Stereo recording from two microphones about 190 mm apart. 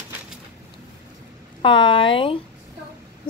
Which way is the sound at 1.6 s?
25° left (ahead or behind).